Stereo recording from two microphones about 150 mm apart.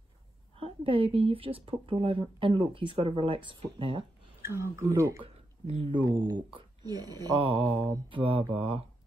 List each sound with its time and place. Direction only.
0.6 s speech: 40° right (ahead or behind)
4.4 s speech: 15° right (ahead or behind)
5.2 s speech: 40° right (ahead or behind)